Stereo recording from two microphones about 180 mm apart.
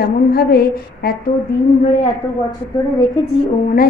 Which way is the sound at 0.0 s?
60° left (ahead or behind).